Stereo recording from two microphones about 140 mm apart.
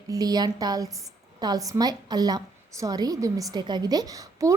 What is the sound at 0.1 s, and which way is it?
A woman's voice, 25° right (ahead or behind).